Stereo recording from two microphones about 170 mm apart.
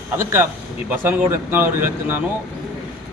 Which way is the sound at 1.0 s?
10° right (ahead or behind).